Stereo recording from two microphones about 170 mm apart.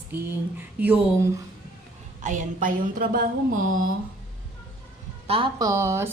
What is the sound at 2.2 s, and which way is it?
A woman's voice, 45° right (ahead or behind).